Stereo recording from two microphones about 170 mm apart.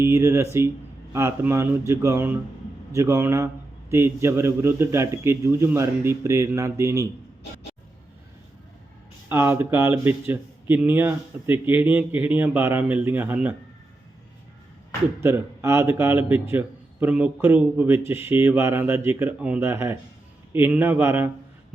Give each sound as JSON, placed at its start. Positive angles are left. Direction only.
{"t": 0.0, "sound": "a man's voice", "side_deg": -15}
{"t": 9.3, "sound": "a man's voice", "side_deg": -15}
{"t": 15.2, "sound": "a man's voice", "side_deg": -15}